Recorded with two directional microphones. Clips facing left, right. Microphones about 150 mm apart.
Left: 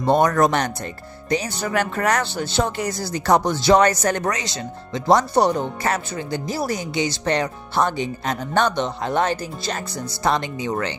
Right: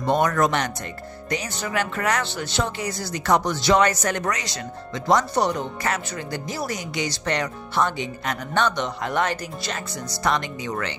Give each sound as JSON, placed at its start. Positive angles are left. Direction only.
{"t": 0.0, "sound": "speech", "side_deg": 35}